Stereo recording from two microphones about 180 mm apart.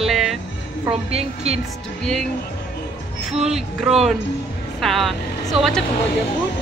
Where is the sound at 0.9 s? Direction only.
35° right (ahead or behind).